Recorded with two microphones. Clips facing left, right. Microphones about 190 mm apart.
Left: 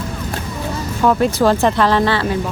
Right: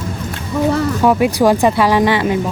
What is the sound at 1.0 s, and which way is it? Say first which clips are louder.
Speech: left 1 dB; 10° right (ahead or behind).